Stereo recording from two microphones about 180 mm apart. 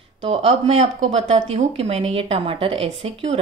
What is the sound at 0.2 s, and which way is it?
A woman's voice, 35° right (ahead or behind).